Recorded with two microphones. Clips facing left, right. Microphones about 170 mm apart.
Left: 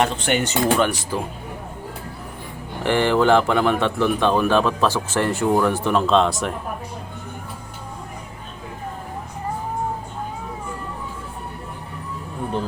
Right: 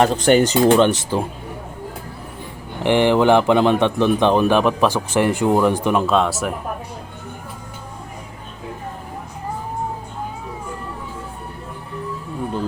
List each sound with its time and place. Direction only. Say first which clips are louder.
0.0 s speech: right 7 dB; 40° right (ahead or behind)
2.8 s a man's voice: right 3 dB; 15° right (ahead or behind)